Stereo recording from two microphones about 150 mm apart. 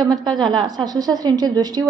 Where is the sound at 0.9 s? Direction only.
25° right (ahead or behind).